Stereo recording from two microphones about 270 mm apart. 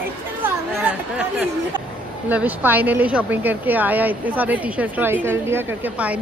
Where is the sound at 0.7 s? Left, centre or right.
Centre.